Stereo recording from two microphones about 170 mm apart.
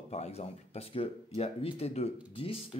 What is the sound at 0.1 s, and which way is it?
Speech, 40° left (ahead or behind).